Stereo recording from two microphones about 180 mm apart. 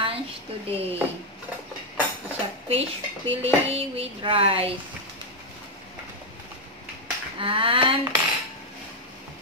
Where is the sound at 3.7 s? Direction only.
30° right (ahead or behind).